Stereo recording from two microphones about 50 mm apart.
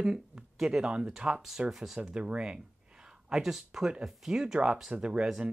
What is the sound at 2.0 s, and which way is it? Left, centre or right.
Speech, centre.